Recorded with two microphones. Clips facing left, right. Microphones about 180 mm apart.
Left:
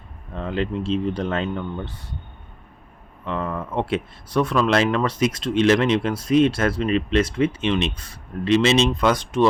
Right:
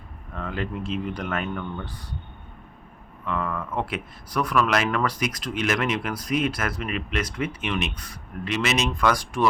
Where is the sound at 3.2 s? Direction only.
30° left (ahead or behind).